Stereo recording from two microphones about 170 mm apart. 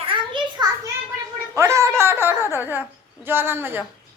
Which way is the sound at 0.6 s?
25° right (ahead or behind).